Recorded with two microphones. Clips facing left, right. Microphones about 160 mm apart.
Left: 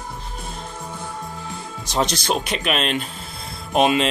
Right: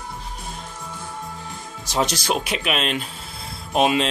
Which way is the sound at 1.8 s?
10° right (ahead or behind).